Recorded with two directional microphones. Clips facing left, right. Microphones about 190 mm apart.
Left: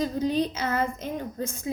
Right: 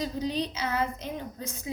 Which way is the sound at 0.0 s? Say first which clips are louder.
Left 5 dB; 50° left (ahead or behind).